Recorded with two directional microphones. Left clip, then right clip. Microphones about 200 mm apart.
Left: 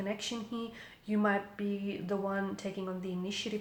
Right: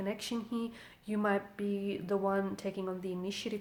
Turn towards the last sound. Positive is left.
turn(degrees=-40)  # may be behind; listen again after turning